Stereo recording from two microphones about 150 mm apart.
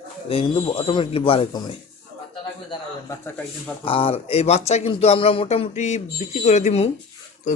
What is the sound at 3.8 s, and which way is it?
Speech, 35° left (ahead or behind).